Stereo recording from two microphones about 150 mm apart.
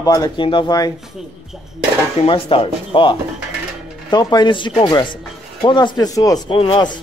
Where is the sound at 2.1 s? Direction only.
40° left (ahead or behind).